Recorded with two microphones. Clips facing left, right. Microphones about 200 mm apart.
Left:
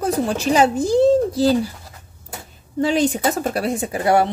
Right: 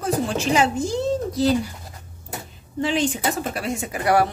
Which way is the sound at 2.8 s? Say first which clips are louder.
Left 4 dB; 40° left (ahead or behind).